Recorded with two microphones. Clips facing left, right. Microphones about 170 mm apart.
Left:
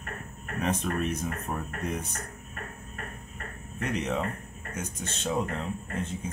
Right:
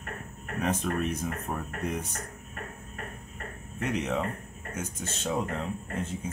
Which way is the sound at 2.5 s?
15° right (ahead or behind).